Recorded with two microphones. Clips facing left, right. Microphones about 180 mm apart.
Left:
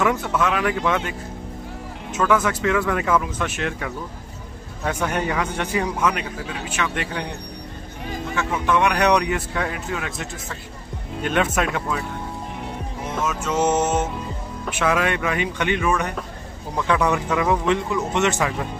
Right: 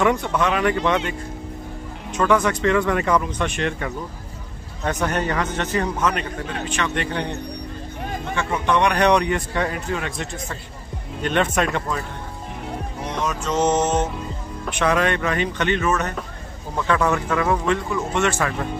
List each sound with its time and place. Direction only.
0.0 s speech: centre (ahead or behind)
2.1 s a man's voice: 5° left (ahead or behind)
8.4 s speech: 5° left (ahead or behind)
13.1 s a man's voice: 5° left (ahead or behind)